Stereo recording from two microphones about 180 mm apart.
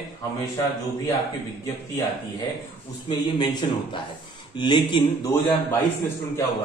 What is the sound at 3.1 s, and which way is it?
Speech, 25° left (ahead or behind).